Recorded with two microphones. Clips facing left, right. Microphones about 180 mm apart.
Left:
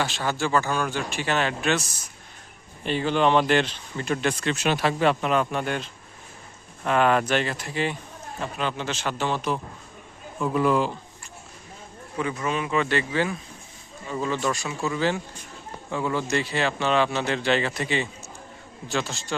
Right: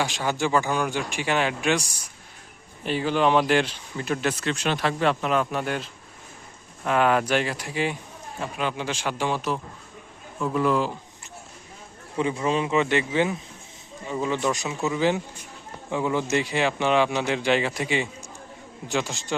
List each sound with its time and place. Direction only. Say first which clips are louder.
0.0 s speech: right 1 dB; 15° right (ahead or behind)
2.8 s speech: even; 5° right (ahead or behind)
4.5 s speech: left 2 dB; 5° left (ahead or behind)
6.8 s speech: even; 5° right (ahead or behind)
12.1 s a man's voice: right 3 dB; 25° right (ahead or behind)